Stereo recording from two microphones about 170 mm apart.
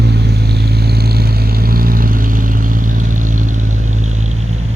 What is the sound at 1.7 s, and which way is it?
Vehicle, 60° right (ahead or behind).